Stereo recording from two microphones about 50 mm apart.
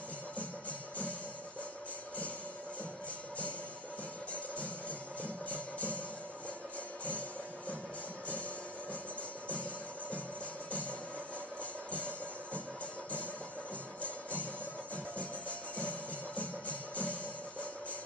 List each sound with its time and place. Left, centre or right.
0.4 s music: left
4.3 s music: left
7.1 s music: left
10.7 s music: left
14.0 s music: left